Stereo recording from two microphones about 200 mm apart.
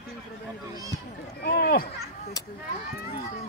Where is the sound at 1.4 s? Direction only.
50° left (ahead or behind).